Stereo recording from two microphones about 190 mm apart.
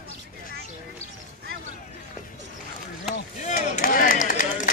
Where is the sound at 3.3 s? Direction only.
40° left (ahead or behind).